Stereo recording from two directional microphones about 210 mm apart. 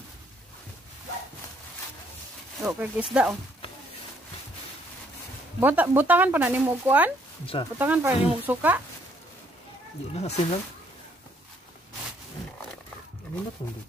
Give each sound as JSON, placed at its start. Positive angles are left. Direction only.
{"t": 2.6, "sound": "speech", "side_deg": -5}
{"t": 5.6, "sound": "speech", "side_deg": -10}
{"t": 10.1, "sound": "speech", "side_deg": 30}